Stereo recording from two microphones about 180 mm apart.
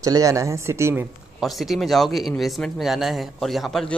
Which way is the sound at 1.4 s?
Centre (ahead or behind).